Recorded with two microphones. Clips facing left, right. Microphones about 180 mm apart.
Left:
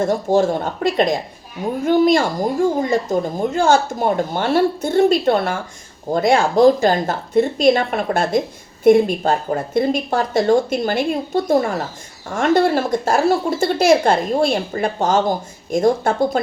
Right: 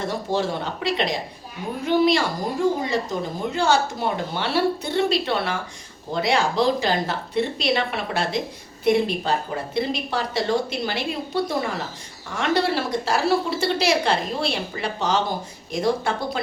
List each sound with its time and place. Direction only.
0.0 s speech: 45° left (ahead or behind)